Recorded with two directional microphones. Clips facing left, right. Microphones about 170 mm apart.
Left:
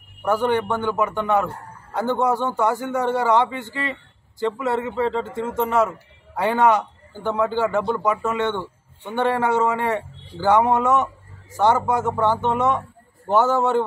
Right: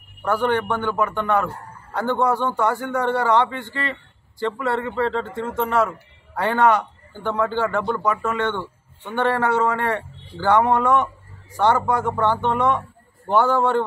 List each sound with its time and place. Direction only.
0.3 s a man's voice: 10° left (ahead or behind)